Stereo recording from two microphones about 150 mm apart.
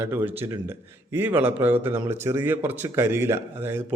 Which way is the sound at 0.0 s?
15° right (ahead or behind).